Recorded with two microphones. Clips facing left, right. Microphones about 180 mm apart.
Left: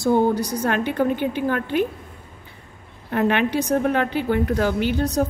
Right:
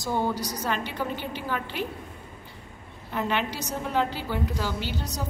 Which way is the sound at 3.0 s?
60° left (ahead or behind).